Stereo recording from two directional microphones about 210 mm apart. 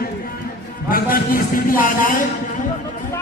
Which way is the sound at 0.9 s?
45° left (ahead or behind).